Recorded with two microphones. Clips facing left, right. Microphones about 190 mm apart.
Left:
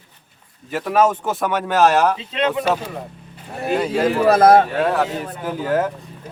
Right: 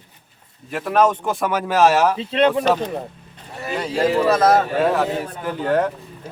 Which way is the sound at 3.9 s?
55° left (ahead or behind).